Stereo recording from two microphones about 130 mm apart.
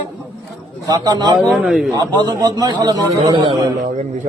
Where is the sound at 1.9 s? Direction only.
30° right (ahead or behind).